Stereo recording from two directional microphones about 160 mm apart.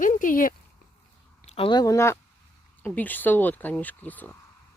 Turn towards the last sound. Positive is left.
turn(degrees=10)  # may be behind; listen again after turning